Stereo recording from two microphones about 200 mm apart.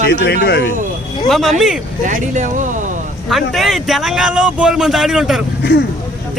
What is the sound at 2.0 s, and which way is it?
Speech, 40° right (ahead or behind).